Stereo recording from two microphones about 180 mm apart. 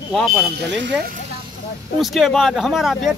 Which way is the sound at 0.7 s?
90° right.